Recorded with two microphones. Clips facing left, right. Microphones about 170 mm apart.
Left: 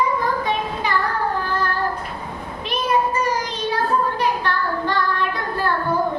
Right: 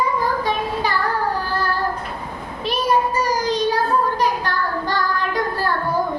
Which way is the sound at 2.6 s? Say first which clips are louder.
Right 1 dB; 35° right (ahead or behind).